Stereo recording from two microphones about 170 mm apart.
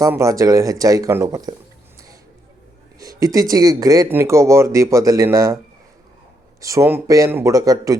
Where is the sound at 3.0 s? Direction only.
20° right (ahead or behind).